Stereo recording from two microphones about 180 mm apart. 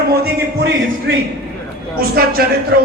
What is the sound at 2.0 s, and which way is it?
Speech, 55° right (ahead or behind).